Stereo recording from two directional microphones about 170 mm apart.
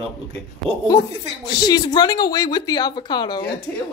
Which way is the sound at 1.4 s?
25° left (ahead or behind).